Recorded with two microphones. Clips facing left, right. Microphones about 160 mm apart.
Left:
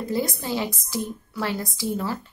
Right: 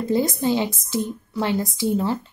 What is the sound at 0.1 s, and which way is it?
Speech, 20° right (ahead or behind).